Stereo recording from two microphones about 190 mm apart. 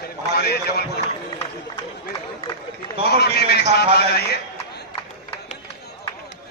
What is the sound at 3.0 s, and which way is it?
A man's voice, 60° left (ahead or behind).